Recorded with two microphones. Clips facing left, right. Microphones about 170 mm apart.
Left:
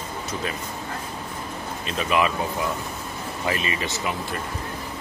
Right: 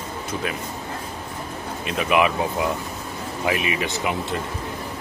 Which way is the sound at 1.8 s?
15° right (ahead or behind).